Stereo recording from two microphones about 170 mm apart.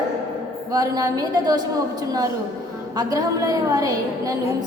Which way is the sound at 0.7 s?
20° right (ahead or behind).